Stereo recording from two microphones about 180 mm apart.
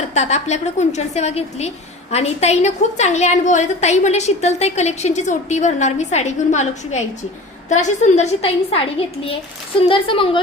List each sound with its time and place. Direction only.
0.1 s a woman's voice: 40° left (ahead or behind)